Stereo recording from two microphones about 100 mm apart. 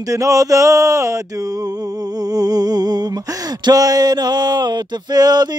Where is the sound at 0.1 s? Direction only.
35° right (ahead or behind).